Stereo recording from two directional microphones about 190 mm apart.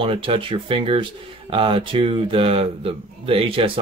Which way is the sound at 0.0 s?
25° right (ahead or behind).